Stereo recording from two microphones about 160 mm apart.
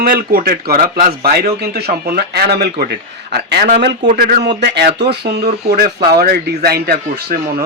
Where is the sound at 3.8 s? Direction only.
80° right; by 4.5 s 60° right (ahead or behind).